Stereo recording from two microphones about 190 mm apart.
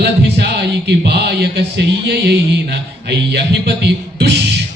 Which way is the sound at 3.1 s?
60° right (ahead or behind).